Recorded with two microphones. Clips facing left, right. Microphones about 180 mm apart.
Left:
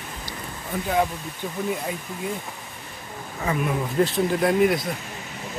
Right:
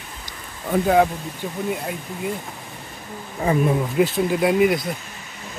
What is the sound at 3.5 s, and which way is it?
Speech, 30° right (ahead or behind).